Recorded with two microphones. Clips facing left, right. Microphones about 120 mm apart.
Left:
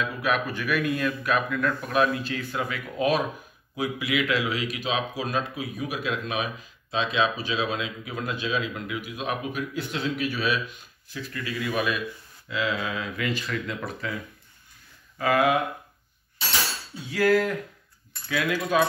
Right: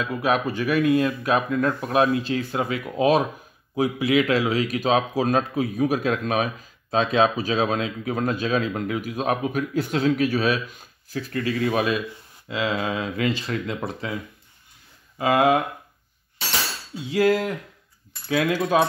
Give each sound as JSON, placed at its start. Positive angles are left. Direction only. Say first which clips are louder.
{"t": 0.0, "sound": "speech", "louder": "right 4 dB", "side_deg": -30}
{"t": 15.1, "sound": "speech", "louder": "right 3 dB", "side_deg": -25}
{"t": 17.1, "sound": "speech", "louder": "right 1 dB", "side_deg": -25}